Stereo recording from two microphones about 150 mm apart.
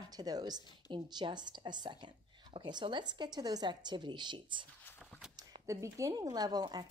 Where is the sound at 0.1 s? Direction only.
25° right (ahead or behind).